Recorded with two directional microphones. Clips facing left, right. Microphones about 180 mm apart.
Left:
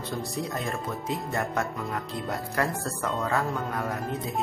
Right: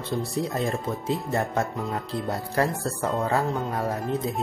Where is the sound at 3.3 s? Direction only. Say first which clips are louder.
Right 3 dB; 20° right (ahead or behind).